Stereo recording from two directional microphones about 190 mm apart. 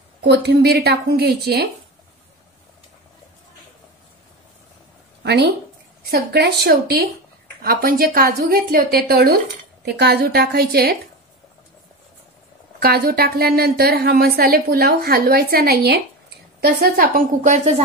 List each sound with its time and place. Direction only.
0.3 s a woman's voice: 60° right (ahead or behind)
5.2 s a sound: 60° right (ahead or behind)
6.0 s a woman's voice: 60° right (ahead or behind)
12.7 s a woman's voice: 55° right (ahead or behind)